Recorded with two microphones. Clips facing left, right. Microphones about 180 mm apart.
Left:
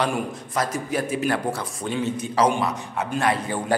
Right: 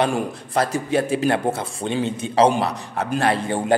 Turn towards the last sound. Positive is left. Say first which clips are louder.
# right 3 dB
turn(degrees=-30)  # may be behind; listen again after turning